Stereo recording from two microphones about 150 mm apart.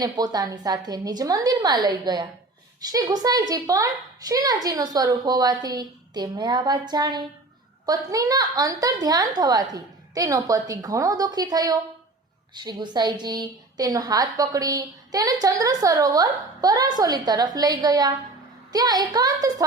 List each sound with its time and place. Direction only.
0.0 s a woman's voice: 25° right (ahead or behind)